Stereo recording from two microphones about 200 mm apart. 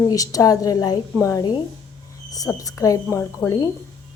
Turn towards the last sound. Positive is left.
turn(degrees=15)  # may be behind; listen again after turning